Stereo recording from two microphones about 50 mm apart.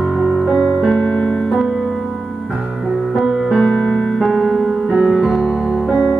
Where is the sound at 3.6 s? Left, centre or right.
Centre.